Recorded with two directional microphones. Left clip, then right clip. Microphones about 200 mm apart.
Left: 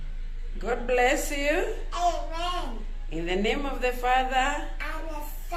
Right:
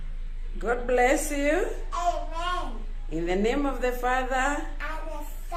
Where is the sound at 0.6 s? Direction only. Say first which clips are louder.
Right 1 dB; 20° right (ahead or behind).